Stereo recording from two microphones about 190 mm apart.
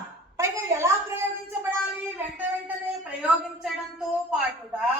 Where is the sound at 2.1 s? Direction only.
10° right (ahead or behind).